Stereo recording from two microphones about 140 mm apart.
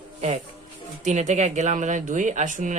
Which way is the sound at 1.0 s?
55° right (ahead or behind).